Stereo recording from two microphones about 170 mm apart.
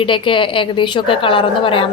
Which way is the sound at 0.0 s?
30° left (ahead or behind).